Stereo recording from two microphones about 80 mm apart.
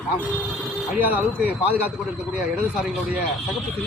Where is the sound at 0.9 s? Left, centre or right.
Right.